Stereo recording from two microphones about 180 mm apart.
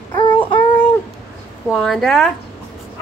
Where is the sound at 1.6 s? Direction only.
Centre (ahead or behind).